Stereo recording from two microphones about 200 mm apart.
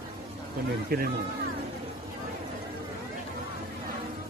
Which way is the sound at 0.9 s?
50° right (ahead or behind).